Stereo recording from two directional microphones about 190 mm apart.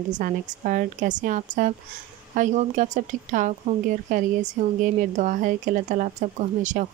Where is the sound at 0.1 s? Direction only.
45° right (ahead or behind).